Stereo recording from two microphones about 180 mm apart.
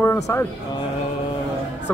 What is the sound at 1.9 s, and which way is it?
Speech, 10° left (ahead or behind).